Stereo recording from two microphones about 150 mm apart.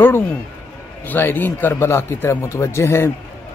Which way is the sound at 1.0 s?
10° left (ahead or behind).